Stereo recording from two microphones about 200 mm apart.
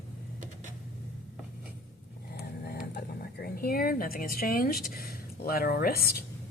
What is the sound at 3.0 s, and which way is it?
Speech, 50° left (ahead or behind).